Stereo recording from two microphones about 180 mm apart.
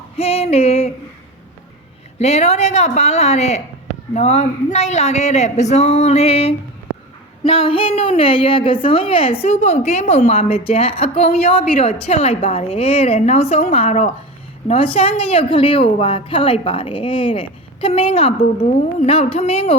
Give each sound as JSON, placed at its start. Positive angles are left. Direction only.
{"t": 0.2, "sound": "a woman's voice", "side_deg": 35}
{"t": 2.1, "sound": "a woman's voice", "side_deg": 40}